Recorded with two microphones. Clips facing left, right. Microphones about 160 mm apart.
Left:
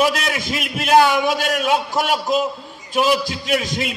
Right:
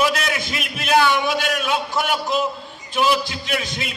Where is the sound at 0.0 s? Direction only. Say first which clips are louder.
Left 2 dB; 45° left (ahead or behind).